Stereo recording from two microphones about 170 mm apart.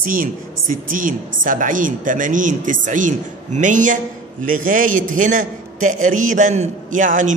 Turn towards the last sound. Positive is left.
turn(degrees=-50)  # may be behind; listen again after turning